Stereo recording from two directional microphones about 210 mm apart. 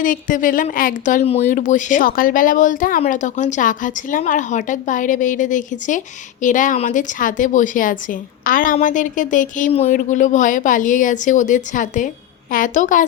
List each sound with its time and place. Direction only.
0.0 s a woman's voice: 40° left (ahead or behind)